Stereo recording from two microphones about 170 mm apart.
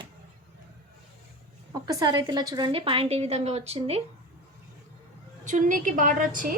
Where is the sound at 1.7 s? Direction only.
25° right (ahead or behind).